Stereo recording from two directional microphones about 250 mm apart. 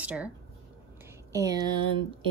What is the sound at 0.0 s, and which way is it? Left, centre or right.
Speech, centre.